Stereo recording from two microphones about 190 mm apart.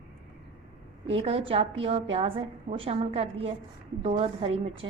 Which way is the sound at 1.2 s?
30° right (ahead or behind).